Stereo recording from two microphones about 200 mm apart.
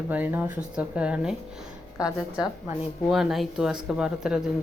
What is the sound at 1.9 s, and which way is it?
Speech, 20° left (ahead or behind).